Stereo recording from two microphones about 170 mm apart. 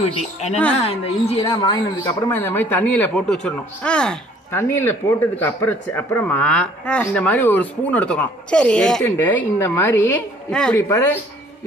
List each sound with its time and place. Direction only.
0.0 s a woman's voice: 40° left (ahead or behind)
1.5 s speech: 25° left (ahead or behind)
2.3 s speech: 10° left (ahead or behind)